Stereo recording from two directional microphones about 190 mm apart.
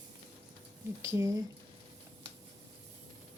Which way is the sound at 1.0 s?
15° right (ahead or behind).